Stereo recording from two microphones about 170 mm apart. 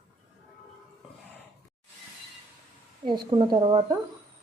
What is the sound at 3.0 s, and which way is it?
Speech, 30° right (ahead or behind).